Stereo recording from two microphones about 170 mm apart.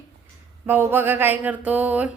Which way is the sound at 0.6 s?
10° right (ahead or behind).